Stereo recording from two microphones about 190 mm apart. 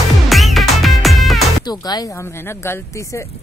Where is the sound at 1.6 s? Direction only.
20° left (ahead or behind).